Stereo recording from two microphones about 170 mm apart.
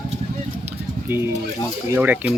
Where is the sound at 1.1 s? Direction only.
10° right (ahead or behind).